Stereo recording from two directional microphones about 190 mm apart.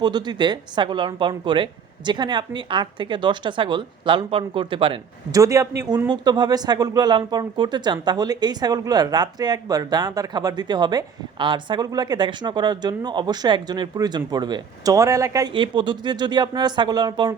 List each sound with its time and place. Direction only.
0.0 s a woman's voice: 20° right (ahead or behind)